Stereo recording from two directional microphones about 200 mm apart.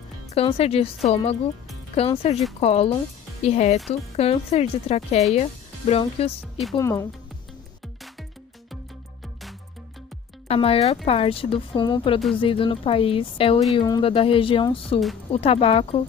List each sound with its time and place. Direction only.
0.3 s a woman's voice: 30° left (ahead or behind)
6.8 s speech: 15° left (ahead or behind)
10.5 s a woman's voice: 30° left (ahead or behind)